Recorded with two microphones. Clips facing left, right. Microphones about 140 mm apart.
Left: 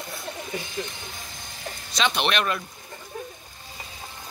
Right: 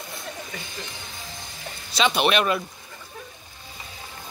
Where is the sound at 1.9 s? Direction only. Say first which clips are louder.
Right 3 dB; 5° right (ahead or behind).